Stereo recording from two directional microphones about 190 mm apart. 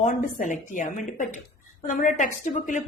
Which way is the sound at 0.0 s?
40° left (ahead or behind).